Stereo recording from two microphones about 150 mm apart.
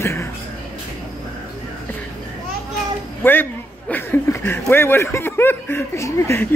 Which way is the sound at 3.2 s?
15° left (ahead or behind).